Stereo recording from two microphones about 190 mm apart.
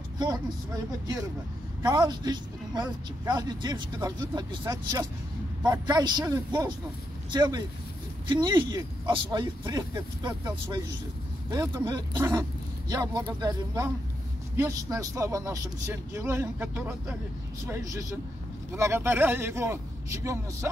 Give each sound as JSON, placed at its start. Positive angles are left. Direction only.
{"t": 1.8, "sound": "speech", "side_deg": -20}